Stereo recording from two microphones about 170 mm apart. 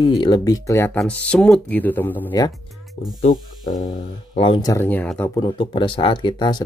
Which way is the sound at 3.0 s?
40° left (ahead or behind).